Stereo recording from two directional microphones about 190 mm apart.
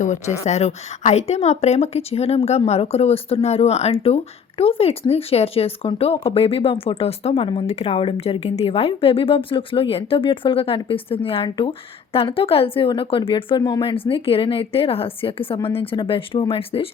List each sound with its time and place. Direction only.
0.0 s a woman's voice: 40° left (ahead or behind)